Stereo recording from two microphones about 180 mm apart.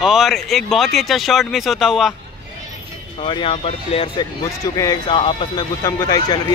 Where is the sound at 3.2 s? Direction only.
30° left (ahead or behind).